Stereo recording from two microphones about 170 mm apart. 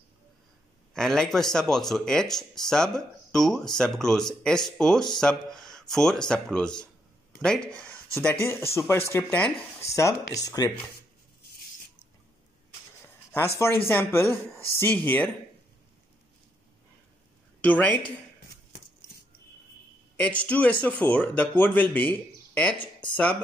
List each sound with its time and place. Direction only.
0.9 s a man's voice: 5° left (ahead or behind); by 10.7 s 20° left (ahead or behind)
13.8 s a man's voice: 15° left (ahead or behind)
17.6 s a man's voice: 10° left (ahead or behind)
20.2 s a man's voice: 10° left (ahead or behind)
22.8 s speech: 30° left (ahead or behind)